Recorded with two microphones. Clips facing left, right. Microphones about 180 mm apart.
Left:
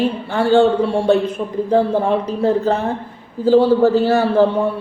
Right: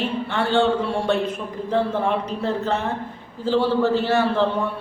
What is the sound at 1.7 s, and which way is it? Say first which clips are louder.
A man's voice: left 5 dB; 35° left (ahead or behind).